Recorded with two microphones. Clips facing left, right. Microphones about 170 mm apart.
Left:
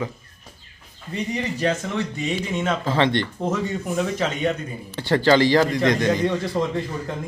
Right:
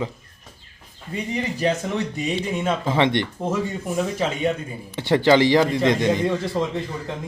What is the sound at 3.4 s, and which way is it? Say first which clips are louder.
Speech: even; 5° right (ahead or behind).